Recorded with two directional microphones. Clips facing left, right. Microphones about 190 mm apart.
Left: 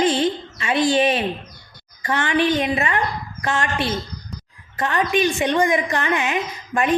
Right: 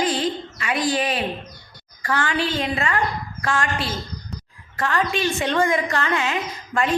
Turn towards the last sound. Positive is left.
turn(degrees=20)  # may be behind; listen again after turning